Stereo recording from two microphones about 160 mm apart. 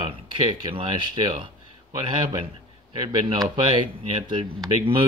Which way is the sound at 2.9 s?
30° right (ahead or behind).